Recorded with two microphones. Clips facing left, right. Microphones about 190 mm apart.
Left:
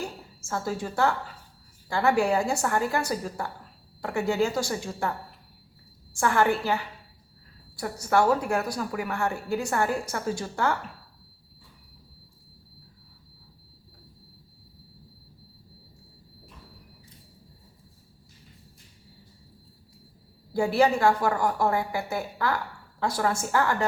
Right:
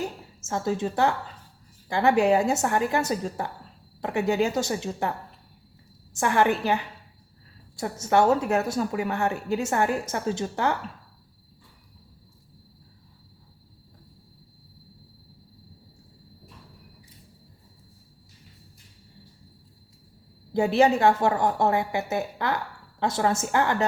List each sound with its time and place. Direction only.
0.0 s a sound: 20° right (ahead or behind)
1.9 s a woman's voice: 20° right (ahead or behind)
6.1 s a woman's voice: 20° right (ahead or behind)
20.5 s a woman's voice: 20° right (ahead or behind)